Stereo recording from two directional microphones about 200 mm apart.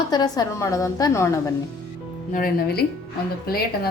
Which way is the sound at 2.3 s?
50° left (ahead or behind).